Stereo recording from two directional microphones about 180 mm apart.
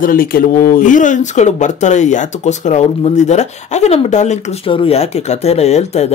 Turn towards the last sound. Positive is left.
turn(degrees=35)  # may be behind; listen again after turning